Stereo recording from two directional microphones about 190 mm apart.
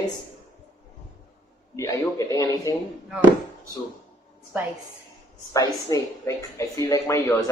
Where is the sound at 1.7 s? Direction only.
15° left (ahead or behind).